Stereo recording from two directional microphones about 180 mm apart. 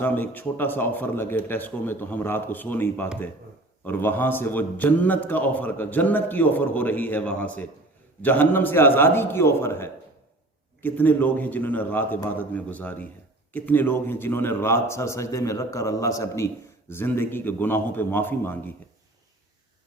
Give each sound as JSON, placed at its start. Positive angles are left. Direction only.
{"t": 0.0, "sound": "a man's voice", "side_deg": 10}